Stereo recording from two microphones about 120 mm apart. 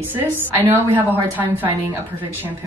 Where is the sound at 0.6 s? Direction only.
15° right (ahead or behind).